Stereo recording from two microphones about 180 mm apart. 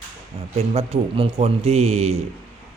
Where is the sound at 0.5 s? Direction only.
35° right (ahead or behind).